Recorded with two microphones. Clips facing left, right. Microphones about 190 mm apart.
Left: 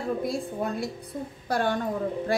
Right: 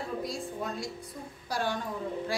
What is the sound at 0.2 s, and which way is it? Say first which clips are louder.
A woman's voice: left 6 dB; 55° left (ahead or behind).